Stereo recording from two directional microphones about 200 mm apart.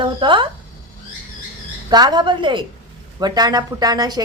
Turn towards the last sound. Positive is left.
turn(degrees=-20)  # may be behind; listen again after turning